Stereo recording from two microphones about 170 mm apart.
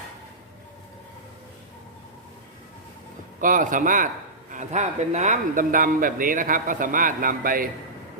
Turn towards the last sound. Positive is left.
turn(degrees=-55)  # may be behind; listen again after turning